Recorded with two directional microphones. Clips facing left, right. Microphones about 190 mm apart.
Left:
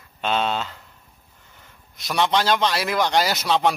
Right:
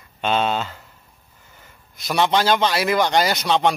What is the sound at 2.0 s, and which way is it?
Speech, centre (ahead or behind).